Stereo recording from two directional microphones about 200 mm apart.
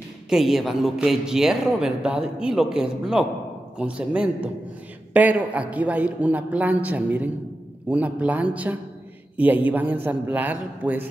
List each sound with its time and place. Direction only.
0.3 s a man's voice: centre (ahead or behind)